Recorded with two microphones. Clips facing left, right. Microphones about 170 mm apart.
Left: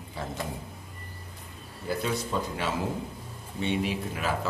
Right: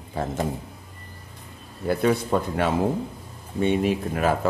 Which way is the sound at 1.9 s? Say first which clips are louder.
Right 8 dB; 60° right (ahead or behind).